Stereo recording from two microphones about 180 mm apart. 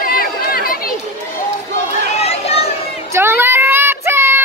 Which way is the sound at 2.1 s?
35° left (ahead or behind).